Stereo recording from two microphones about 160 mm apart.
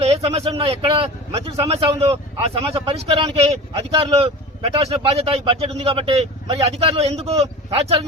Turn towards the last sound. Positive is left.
turn(degrees=-40)  # may be behind; listen again after turning